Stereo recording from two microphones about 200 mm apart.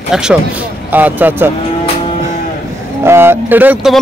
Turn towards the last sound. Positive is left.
turn(degrees=-5)  # may be behind; listen again after turning